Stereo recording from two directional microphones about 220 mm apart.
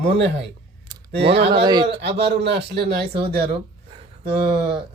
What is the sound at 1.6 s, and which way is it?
Speech, 20° right (ahead or behind).